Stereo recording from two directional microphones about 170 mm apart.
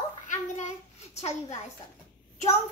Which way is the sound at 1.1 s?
40° left (ahead or behind).